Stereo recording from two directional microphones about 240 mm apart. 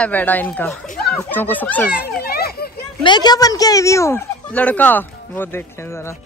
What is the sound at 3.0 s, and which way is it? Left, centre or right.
Speech, centre.